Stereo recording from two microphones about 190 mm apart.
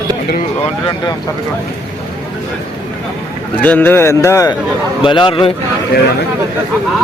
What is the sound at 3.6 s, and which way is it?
A man's voice, 10° left (ahead or behind).